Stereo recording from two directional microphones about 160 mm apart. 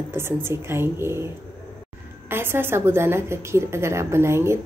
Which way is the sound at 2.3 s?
15° right (ahead or behind).